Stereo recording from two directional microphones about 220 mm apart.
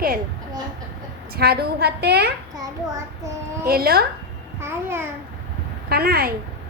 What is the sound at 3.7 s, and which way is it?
Speech, 45° right (ahead or behind).